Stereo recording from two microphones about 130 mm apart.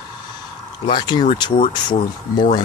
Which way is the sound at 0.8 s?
35° left (ahead or behind).